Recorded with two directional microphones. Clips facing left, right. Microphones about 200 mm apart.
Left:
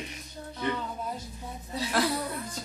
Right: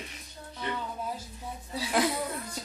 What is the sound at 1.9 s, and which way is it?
Chuckle, 15° right (ahead or behind).